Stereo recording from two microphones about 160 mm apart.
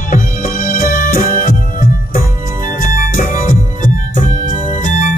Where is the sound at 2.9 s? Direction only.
60° left (ahead or behind).